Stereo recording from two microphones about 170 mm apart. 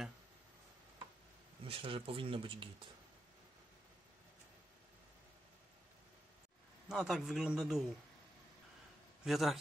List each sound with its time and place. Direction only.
1.6 s speech: 35° right (ahead or behind)
6.9 s a man's voice: centre (ahead or behind)
9.2 s a man's voice: centre (ahead or behind)